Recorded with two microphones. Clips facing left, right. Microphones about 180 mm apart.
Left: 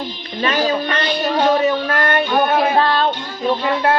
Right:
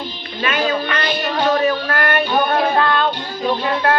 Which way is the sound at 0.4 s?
35° left (ahead or behind).